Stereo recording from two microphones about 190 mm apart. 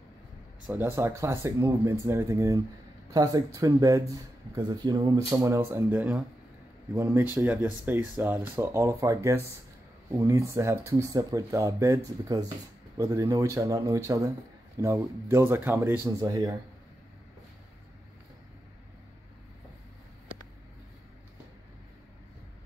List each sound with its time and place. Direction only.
0.7 s speech: 10° right (ahead or behind)